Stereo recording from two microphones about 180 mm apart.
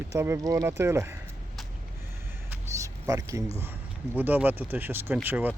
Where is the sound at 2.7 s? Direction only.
15° right (ahead or behind).